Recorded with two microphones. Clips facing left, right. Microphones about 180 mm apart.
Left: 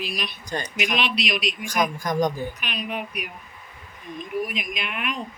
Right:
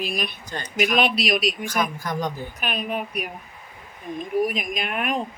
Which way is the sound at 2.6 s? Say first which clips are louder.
Right 3 dB; 45° right (ahead or behind).